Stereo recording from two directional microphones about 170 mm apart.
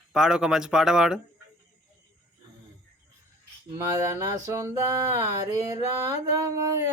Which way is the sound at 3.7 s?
15° right (ahead or behind).